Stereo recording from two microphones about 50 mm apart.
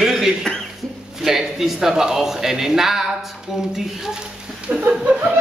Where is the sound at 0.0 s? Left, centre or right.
Centre.